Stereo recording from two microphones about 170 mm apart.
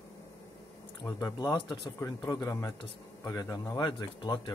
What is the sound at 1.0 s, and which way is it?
Speech, 20° left (ahead or behind).